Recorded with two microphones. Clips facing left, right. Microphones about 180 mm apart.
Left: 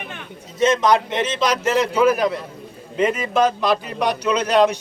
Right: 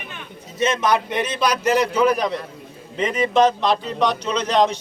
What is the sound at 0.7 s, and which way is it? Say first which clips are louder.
A man's voice: left 3 dB; 20° left (ahead or behind).